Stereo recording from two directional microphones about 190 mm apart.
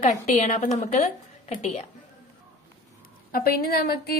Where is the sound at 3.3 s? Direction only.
50° left (ahead or behind).